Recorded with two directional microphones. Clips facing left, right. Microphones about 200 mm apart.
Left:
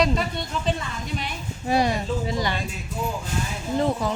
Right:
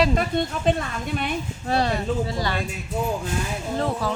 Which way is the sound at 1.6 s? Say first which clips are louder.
Left 1 dB; 15° left (ahead or behind).